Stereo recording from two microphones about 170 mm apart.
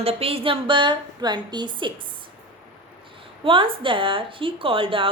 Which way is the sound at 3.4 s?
30° right (ahead or behind).